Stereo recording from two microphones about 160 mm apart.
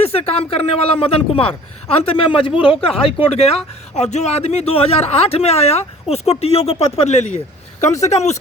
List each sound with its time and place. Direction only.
0.0 s speech: 40° left (ahead or behind)